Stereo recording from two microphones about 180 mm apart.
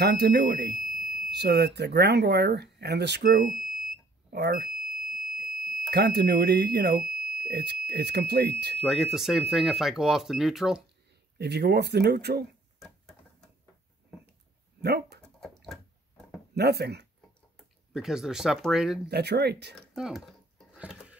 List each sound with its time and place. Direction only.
0.0 s speech: 65° right (ahead or behind)
5.3 s fire alarm: 55° right (ahead or behind)
5.9 s speech: 65° right (ahead or behind)
8.7 s speech: centre (ahead or behind)
11.3 s speech: 65° right (ahead or behind)
12.7 s a sound: centre (ahead or behind)
14.8 s speech: 65° right (ahead or behind)
15.4 s a sound: centre (ahead or behind)
16.5 s speech: 65° right (ahead or behind)
17.6 s speech: centre (ahead or behind)
19.0 s speech: 65° right (ahead or behind)
19.9 s a sound: centre (ahead or behind)